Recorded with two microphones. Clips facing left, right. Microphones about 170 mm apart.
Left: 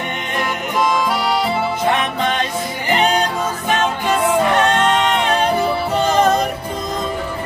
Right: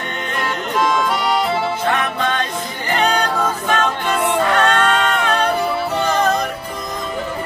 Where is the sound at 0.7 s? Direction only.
Centre (ahead or behind).